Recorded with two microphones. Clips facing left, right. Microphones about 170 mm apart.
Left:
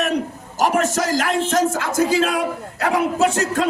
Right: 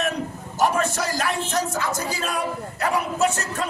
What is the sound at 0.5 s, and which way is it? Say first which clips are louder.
Speech: left 3 dB; 90° left.